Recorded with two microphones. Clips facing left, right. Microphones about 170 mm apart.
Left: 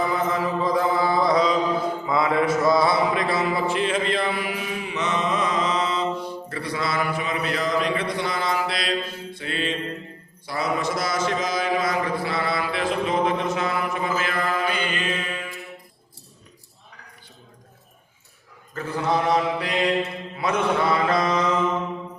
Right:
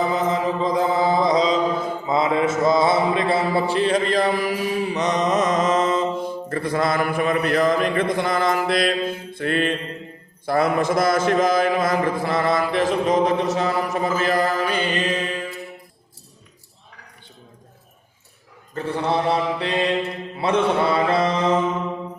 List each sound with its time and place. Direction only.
0.1 s chant: 20° right (ahead or behind)
2.0 s mantra: 20° right (ahead or behind)
18.7 s mantra: 30° right (ahead or behind)